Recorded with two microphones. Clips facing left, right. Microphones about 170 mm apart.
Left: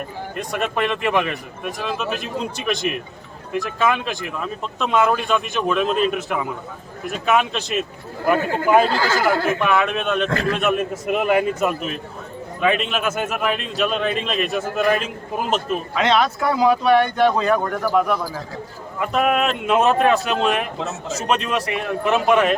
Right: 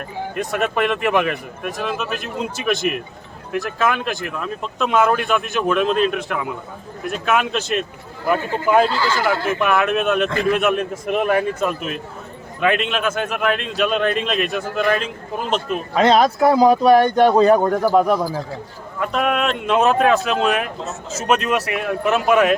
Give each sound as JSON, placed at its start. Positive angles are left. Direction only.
{"t": 0.3, "sound": "speech", "side_deg": 0}
{"t": 8.9, "sound": "speech", "side_deg": 45}
{"t": 9.6, "sound": "speech", "side_deg": -5}
{"t": 16.0, "sound": "speech", "side_deg": -40}
{"t": 18.9, "sound": "speech", "side_deg": 0}